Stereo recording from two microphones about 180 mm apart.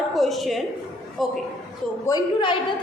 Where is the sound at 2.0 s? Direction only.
25° left (ahead or behind).